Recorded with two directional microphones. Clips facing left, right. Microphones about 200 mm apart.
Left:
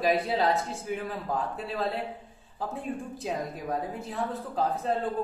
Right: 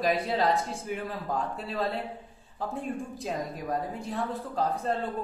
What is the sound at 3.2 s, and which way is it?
Speech, centre (ahead or behind).